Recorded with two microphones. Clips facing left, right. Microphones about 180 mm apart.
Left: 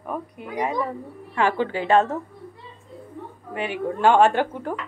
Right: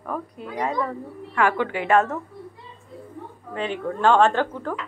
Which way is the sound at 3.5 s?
10° left (ahead or behind).